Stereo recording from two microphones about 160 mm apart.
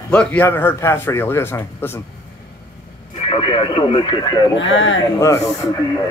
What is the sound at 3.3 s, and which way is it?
Speech, 30° left (ahead or behind).